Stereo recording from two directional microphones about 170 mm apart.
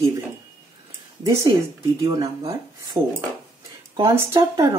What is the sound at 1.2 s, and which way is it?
Speech, 20° right (ahead or behind).